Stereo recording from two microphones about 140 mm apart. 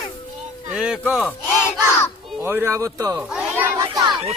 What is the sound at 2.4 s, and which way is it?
Speech, 15° right (ahead or behind).